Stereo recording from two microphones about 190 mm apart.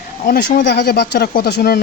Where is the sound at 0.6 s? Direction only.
55° left (ahead or behind).